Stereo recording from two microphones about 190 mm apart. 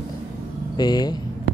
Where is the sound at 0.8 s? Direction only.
20° left (ahead or behind).